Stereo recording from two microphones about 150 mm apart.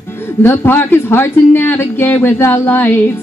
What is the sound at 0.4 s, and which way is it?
Speech, 15° left (ahead or behind).